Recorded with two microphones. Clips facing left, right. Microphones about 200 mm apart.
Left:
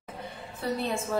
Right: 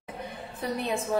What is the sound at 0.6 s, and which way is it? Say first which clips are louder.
Speech: even; 15° right (ahead or behind).